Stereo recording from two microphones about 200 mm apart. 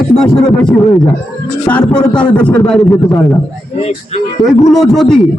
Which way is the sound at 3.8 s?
30° left (ahead or behind).